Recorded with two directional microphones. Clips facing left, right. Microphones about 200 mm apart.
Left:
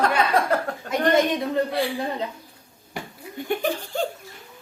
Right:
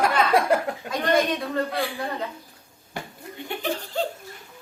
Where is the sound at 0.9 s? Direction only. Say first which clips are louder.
Left 3 dB; 20° left (ahead or behind).